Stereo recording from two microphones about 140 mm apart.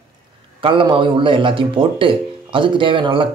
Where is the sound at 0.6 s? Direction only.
40° right (ahead or behind).